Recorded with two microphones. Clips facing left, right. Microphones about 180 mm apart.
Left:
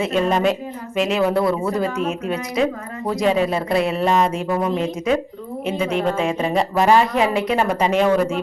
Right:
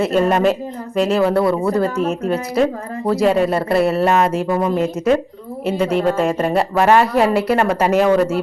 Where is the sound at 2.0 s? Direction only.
40° right (ahead or behind).